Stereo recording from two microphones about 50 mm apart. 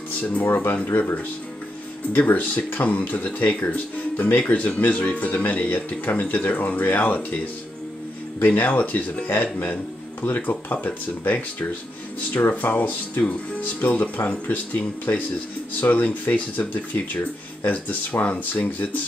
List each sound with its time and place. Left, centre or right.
0.3 s speech: left
0.8 s speech: left
2.1 s speech: left
8.4 s speech: left
15.8 s speech: left